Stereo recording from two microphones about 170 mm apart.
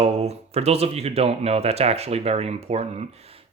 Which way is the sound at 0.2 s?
40° right (ahead or behind).